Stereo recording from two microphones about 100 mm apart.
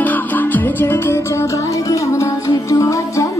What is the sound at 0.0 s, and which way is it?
Music, 15° left (ahead or behind).